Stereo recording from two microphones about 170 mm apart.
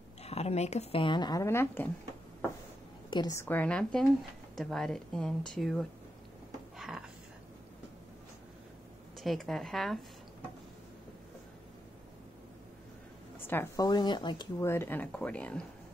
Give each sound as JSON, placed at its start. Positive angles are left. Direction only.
{"t": 0.2, "sound": "a woman's voice", "side_deg": 35}
{"t": 3.1, "sound": "a woman's voice", "side_deg": 25}
{"t": 6.8, "sound": "a sound", "side_deg": -5}
{"t": 9.2, "sound": "a woman's voice", "side_deg": 0}
{"t": 13.5, "sound": "speech", "side_deg": 15}
{"t": 14.6, "sound": "speech", "side_deg": 15}